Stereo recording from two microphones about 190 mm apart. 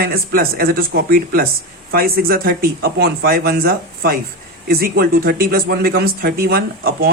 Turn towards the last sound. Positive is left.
turn(degrees=-50)  # may be behind; listen again after turning